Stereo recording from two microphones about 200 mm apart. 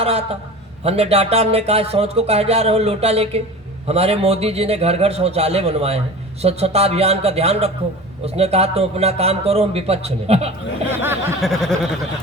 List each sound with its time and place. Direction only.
0.0 s a man's voice: 30° right (ahead or behind)
11.4 s speech: centre (ahead or behind)